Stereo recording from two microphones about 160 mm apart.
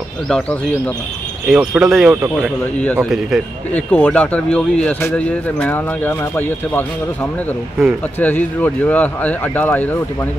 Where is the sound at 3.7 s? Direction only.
10° left (ahead or behind).